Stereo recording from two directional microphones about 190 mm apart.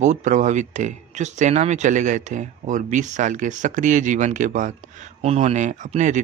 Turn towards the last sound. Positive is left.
turn(degrees=-40)  # may be behind; listen again after turning